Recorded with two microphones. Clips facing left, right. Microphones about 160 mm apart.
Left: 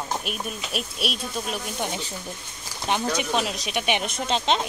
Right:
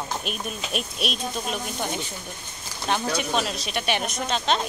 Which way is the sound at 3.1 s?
15° left (ahead or behind).